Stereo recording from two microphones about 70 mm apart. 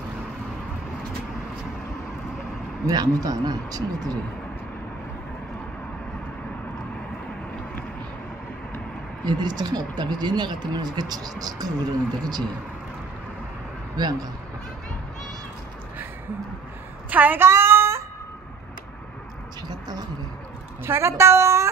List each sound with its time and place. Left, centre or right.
2.9 s speech: right
9.2 s speech: right
13.9 s speech: right
17.1 s a sound: right
20.8 s speech: right